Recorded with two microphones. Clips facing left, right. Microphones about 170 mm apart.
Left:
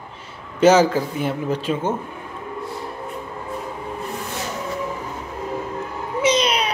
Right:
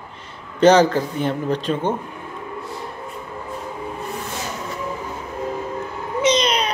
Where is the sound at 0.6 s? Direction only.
10° left (ahead or behind).